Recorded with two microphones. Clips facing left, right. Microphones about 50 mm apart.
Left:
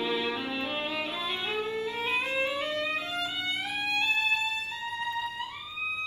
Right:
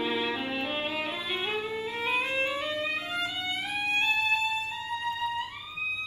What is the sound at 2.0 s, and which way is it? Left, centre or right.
Music, right.